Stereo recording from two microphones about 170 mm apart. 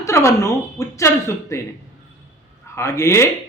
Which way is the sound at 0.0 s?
15° left (ahead or behind).